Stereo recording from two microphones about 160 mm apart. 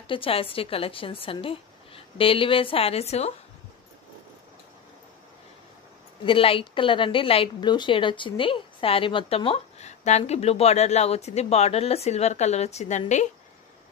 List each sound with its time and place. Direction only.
0.0 s speech: 35° left (ahead or behind)
6.2 s speech: 35° left (ahead or behind)